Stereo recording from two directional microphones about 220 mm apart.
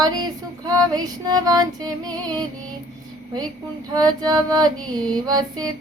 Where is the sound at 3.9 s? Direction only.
15° right (ahead or behind).